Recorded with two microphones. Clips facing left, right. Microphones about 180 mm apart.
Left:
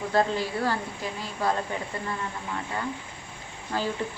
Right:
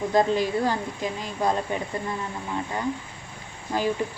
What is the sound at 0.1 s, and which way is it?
A woman's voice, 15° right (ahead or behind).